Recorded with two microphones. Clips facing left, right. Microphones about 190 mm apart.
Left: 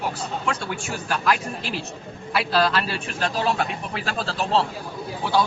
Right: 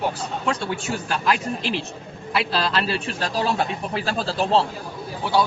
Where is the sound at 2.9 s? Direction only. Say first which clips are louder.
Right 1 dB; 35° right (ahead or behind).